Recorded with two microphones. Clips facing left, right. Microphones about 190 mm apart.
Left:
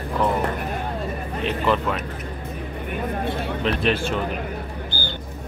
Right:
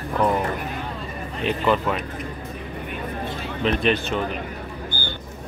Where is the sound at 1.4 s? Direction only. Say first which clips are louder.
Right 1 dB; centre (ahead or behind).